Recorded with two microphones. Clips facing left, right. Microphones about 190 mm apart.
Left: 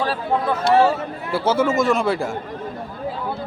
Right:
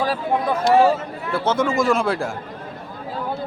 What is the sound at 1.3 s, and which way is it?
Speech, 10° left (ahead or behind).